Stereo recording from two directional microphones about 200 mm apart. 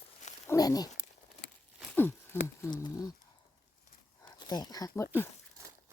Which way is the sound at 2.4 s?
15° left (ahead or behind).